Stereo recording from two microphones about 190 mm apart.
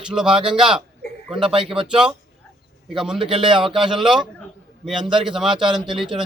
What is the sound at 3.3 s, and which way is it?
Speech, 25° right (ahead or behind).